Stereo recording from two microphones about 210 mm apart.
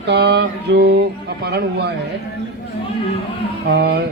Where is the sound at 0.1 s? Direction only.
55° right (ahead or behind).